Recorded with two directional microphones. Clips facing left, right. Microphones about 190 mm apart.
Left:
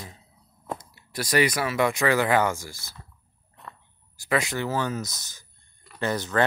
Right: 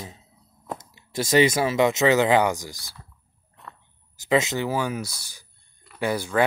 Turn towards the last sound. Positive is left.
turn(degrees=-10)  # may be behind; listen again after turning